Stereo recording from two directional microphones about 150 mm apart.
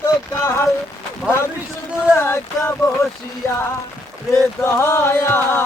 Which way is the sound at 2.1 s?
15° left (ahead or behind).